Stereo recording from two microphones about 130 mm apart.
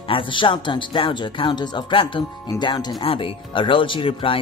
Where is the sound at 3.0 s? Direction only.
45° left (ahead or behind).